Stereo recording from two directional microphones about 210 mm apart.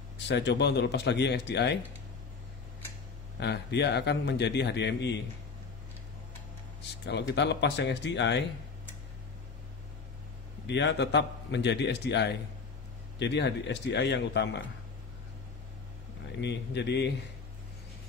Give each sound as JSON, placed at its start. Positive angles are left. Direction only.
{"t": 0.3, "sound": "a man's voice", "side_deg": 55}
{"t": 3.3, "sound": "a man's voice", "side_deg": 55}
{"t": 7.1, "sound": "a man's voice", "side_deg": 55}
{"t": 10.7, "sound": "a man's voice", "side_deg": 55}
{"t": 16.3, "sound": "a man's voice", "side_deg": 55}